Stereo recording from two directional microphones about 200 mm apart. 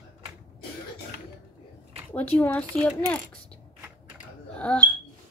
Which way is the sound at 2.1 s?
10° left (ahead or behind).